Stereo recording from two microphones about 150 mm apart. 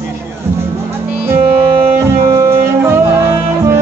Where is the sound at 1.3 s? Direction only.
15° right (ahead or behind).